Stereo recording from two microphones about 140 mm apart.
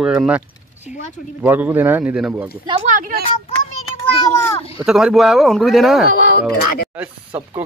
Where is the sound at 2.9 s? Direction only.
90° right.